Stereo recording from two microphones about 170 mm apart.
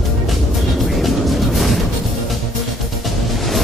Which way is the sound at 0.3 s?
Centre (ahead or behind).